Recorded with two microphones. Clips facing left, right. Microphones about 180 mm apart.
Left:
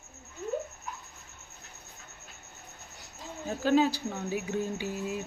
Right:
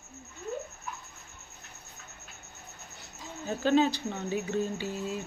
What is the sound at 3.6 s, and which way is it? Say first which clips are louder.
Speech: even; 5° left (ahead or behind).